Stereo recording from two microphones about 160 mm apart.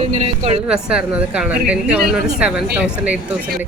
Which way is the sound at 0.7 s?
5° right (ahead or behind).